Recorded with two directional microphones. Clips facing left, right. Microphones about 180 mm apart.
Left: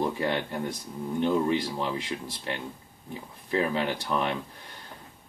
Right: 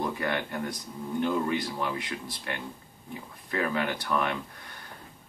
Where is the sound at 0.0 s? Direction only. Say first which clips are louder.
Left 2 dB; 25° left (ahead or behind).